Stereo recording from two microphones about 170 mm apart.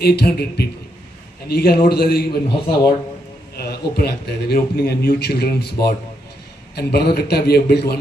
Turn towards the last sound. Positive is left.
turn(degrees=70)  # may be behind; listen again after turning